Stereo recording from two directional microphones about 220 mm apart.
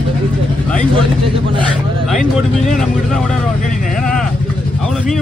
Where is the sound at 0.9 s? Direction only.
25° right (ahead or behind).